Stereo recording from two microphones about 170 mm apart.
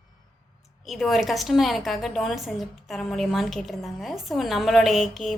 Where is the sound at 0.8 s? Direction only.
Centre (ahead or behind).